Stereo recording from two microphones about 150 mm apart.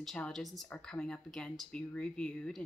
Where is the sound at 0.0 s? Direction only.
5° left (ahead or behind).